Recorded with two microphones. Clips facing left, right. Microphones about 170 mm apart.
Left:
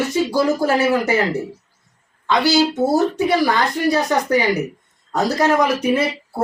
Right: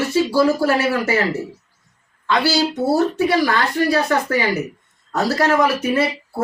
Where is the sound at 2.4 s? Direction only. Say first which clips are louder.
Left 4 dB; 15° left (ahead or behind).